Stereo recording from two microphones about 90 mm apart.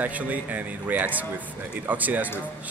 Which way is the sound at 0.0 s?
15° right (ahead or behind).